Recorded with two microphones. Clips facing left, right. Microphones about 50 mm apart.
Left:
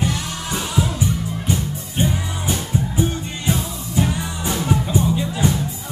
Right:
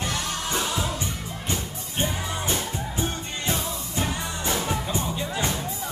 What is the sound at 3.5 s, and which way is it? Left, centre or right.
Music, centre.